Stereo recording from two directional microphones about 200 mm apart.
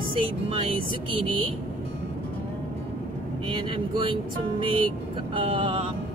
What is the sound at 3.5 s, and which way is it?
Speech, 25° right (ahead or behind).